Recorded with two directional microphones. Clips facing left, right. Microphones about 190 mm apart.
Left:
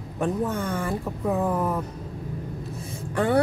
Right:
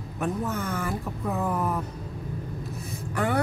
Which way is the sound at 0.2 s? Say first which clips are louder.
Left 3 dB; 30° left (ahead or behind).